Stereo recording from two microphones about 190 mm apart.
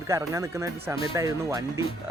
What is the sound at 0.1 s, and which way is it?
Speech, 15° right (ahead or behind).